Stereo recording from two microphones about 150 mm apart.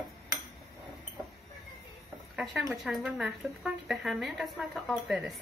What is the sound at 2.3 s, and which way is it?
Speech, centre (ahead or behind).